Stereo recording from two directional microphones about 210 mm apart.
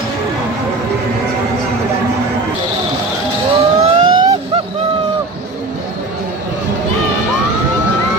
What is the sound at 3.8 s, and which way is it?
Vehicle, 20° right (ahead or behind).